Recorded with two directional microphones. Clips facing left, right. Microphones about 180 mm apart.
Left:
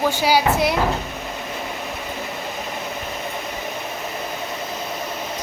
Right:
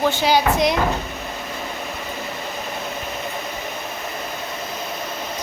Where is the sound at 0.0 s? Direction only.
10° left (ahead or behind).